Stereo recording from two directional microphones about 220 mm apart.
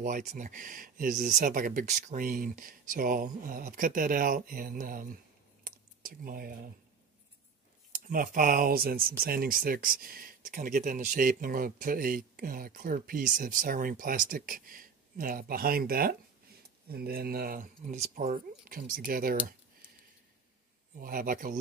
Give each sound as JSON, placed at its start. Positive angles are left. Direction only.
{"t": 0.0, "sound": "speech", "side_deg": -35}
{"t": 7.9, "sound": "speech", "side_deg": -40}
{"t": 21.0, "sound": "speech", "side_deg": -40}